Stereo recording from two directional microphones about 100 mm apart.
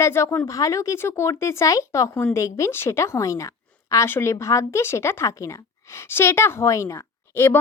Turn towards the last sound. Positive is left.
turn(degrees=25)  # may be behind; listen again after turning